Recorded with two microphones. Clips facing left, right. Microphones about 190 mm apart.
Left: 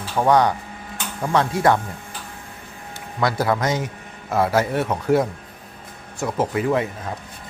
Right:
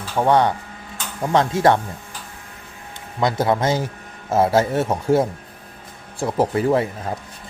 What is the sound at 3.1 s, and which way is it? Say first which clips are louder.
A man's voice: right 2 dB; 20° right (ahead or behind).